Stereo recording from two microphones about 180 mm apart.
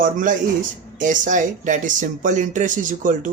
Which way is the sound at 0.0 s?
45° right (ahead or behind).